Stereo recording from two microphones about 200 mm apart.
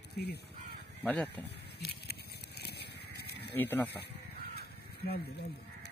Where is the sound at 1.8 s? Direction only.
55° left (ahead or behind).